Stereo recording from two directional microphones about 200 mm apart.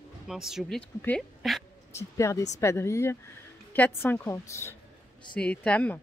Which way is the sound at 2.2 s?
15° left (ahead or behind).